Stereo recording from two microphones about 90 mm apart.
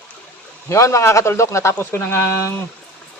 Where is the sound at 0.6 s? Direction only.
35° left (ahead or behind).